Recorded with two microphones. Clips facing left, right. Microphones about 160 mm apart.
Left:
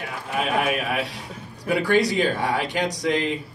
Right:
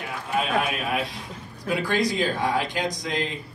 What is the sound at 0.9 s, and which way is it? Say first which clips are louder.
A man's voice: left 1 dB; 70° left (ahead or behind).